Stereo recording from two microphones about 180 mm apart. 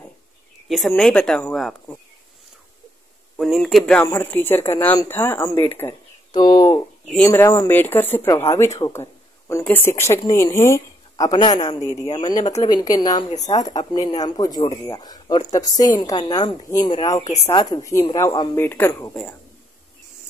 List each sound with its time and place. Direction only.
0.7 s speech: centre (ahead or behind)
3.3 s speech: centre (ahead or behind)